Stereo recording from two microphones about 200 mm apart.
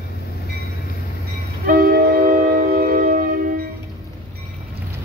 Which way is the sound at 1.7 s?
50° right (ahead or behind).